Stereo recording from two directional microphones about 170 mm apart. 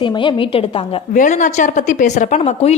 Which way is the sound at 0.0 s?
30° left (ahead or behind).